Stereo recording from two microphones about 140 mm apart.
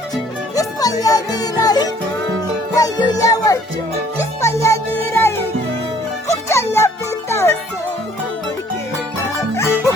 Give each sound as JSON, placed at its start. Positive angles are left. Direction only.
{"t": 0.5, "sound": "music", "side_deg": 25}